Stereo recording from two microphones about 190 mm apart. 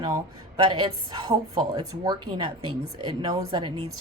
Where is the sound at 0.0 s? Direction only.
25° right (ahead or behind).